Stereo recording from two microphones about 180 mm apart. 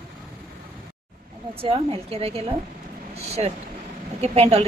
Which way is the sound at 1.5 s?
30° right (ahead or behind).